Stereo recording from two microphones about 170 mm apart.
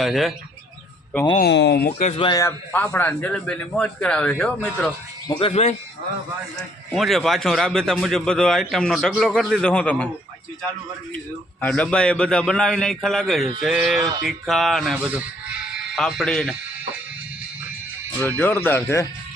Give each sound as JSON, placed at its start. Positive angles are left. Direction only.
{"t": 0.0, "sound": "a man's voice", "side_deg": 0}
{"t": 1.4, "sound": "speech", "side_deg": 90}
{"t": 1.9, "sound": "speech", "side_deg": 40}
{"t": 2.2, "sound": "a man's voice", "side_deg": 20}
{"t": 5.4, "sound": "speech", "side_deg": 35}
{"t": 6.6, "sound": "a man's voice", "side_deg": 0}
{"t": 11.6, "sound": "a man's voice", "side_deg": 5}
{"t": 18.2, "sound": "a man's voice", "side_deg": 10}